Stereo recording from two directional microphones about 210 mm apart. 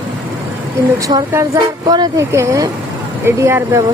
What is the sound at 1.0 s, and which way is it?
Speech, 15° right (ahead or behind).